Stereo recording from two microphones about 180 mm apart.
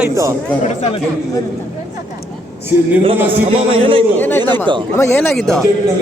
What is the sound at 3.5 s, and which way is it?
Speech, 30° right (ahead or behind).